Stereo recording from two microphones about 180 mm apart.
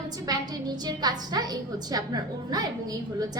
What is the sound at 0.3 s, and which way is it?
A woman's voice, 20° right (ahead or behind).